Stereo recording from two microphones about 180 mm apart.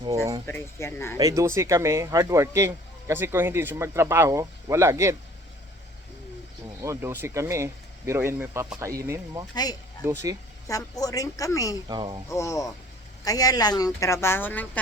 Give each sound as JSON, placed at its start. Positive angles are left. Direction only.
{"t": 0.4, "sound": "speech", "side_deg": 15}
{"t": 1.2, "sound": "speech", "side_deg": -15}
{"t": 6.8, "sound": "speech", "side_deg": -15}
{"t": 10.7, "sound": "a woman's voice", "side_deg": 20}
{"t": 11.9, "sound": "speech", "side_deg": -25}
{"t": 12.3, "sound": "speech", "side_deg": 15}